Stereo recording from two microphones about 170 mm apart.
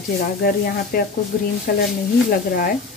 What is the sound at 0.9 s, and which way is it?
Speech, 60° left (ahead or behind).